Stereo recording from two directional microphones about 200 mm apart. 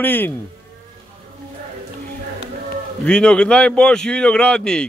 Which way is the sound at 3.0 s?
5° left (ahead or behind).